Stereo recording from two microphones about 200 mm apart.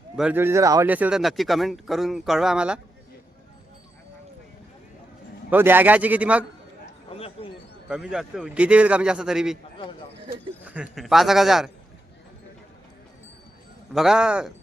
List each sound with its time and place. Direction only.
0.2 s speech: 10° right (ahead or behind)
5.5 s a man's voice: 10° right (ahead or behind)
7.1 s a sound: 30° left (ahead or behind)
7.9 s speech: 5° right (ahead or behind)
10.6 s a man's voice: 5° right (ahead or behind)
13.9 s speech: centre (ahead or behind)